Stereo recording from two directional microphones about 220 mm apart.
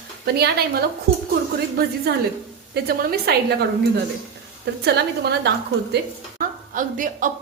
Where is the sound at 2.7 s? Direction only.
45° right (ahead or behind).